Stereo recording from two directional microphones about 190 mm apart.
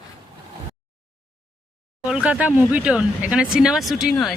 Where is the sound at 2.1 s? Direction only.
5° right (ahead or behind).